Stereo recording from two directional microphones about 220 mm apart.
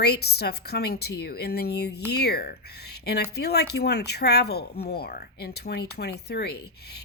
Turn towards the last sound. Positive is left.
turn(degrees=45)  # may be behind; listen again after turning